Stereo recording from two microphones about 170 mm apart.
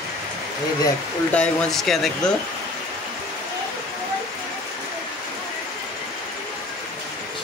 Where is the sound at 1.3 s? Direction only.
5° left (ahead or behind).